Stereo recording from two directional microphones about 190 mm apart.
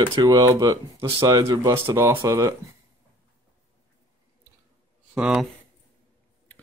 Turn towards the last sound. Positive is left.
turn(degrees=-5)  # may be behind; listen again after turning